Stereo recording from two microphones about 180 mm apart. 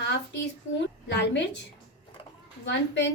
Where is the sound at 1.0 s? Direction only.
80° left.